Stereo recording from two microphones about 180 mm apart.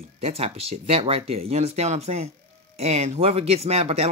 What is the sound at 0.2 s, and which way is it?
Speech, 35° right (ahead or behind).